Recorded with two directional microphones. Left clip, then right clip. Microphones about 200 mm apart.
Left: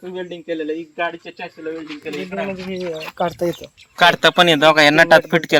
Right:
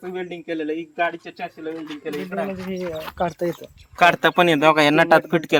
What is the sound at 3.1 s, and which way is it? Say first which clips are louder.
Speech: left 3 dB; 45° left (ahead or behind).